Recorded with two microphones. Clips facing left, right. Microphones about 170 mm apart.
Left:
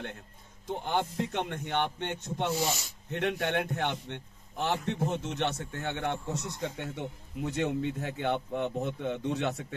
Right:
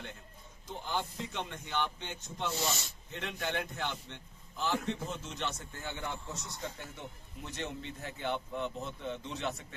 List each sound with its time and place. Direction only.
0.7 s a man's voice: 60° left (ahead or behind)